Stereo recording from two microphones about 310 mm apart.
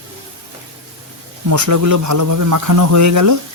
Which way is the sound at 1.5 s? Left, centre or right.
Right.